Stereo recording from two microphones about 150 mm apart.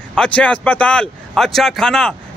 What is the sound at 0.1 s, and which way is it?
Speech, 5° left (ahead or behind).